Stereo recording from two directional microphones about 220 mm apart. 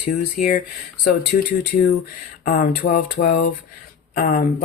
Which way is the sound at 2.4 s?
40° left (ahead or behind).